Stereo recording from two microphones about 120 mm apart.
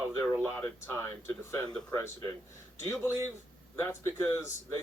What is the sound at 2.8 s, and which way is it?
A man's voice, 20° left (ahead or behind).